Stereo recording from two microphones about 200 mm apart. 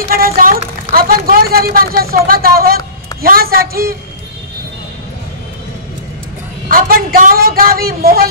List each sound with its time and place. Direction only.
0.1 s speech: 45° right (ahead or behind)
6.7 s speech: 45° right (ahead or behind)